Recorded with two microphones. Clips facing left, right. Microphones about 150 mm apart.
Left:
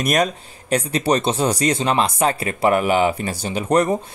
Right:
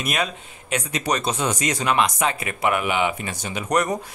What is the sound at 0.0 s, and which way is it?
Speech, 40° left (ahead or behind).